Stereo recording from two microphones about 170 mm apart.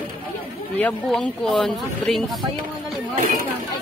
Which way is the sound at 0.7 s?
10° left (ahead or behind).